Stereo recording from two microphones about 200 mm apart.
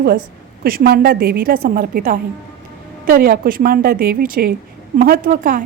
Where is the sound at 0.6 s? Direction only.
50° right (ahead or behind).